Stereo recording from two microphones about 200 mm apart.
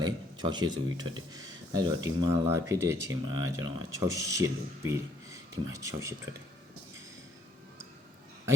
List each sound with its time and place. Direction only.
0.0 s speech: 20° right (ahead or behind)